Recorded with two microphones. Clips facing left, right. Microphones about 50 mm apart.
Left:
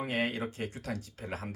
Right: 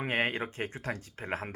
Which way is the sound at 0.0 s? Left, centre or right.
Right.